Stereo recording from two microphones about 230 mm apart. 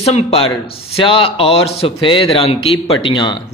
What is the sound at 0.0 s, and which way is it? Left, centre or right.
A man's voice, left.